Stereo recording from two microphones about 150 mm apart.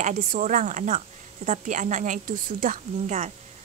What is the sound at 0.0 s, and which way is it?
Speech, 55° right (ahead or behind).